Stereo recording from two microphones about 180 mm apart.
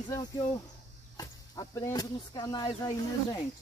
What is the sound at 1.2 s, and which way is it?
Speech, 20° left (ahead or behind).